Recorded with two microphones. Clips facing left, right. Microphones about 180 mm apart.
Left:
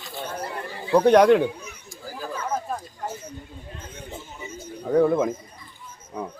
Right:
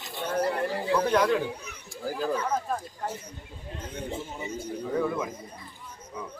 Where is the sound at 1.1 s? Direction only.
75° left (ahead or behind).